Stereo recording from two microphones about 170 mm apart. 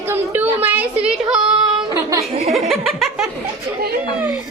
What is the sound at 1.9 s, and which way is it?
Chuckle, 20° right (ahead or behind).